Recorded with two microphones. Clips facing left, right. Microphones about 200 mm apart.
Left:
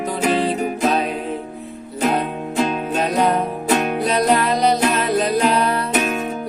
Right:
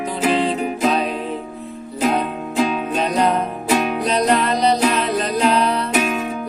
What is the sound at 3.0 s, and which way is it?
Music, 5° left (ahead or behind).